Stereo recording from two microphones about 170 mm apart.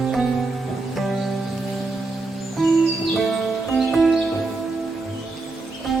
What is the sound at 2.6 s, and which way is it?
Music, centre (ahead or behind).